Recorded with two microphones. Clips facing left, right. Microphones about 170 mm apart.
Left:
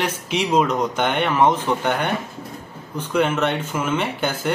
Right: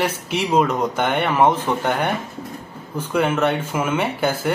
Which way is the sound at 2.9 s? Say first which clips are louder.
Even; 5° right (ahead or behind).